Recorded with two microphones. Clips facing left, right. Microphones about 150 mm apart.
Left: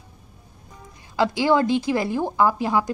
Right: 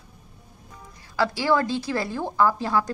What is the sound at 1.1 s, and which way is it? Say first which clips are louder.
A woman's voice: left 3 dB; 20° left (ahead or behind).